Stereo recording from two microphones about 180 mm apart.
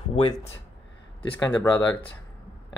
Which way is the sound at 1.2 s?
15° left (ahead or behind).